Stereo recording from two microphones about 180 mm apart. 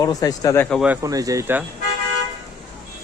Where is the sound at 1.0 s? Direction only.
20° right (ahead or behind).